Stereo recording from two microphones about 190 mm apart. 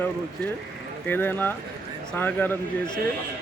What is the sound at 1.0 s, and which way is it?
Speech, 10° left (ahead or behind).